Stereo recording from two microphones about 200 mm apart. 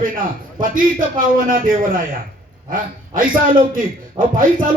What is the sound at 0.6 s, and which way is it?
A man's voice, 45° right (ahead or behind).